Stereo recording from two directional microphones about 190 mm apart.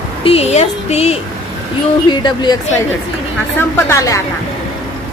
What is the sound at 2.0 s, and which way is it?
Speech, 25° left (ahead or behind).